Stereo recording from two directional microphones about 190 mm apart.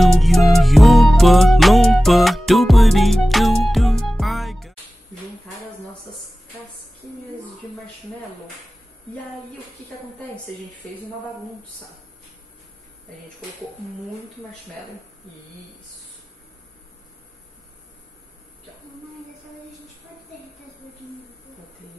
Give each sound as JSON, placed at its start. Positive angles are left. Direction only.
{"t": 0.0, "sound": "music", "side_deg": 0}